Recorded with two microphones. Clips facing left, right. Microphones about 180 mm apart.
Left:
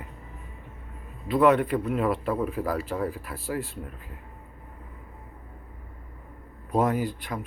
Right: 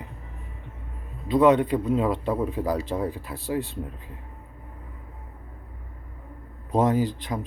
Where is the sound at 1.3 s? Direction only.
20° right (ahead or behind).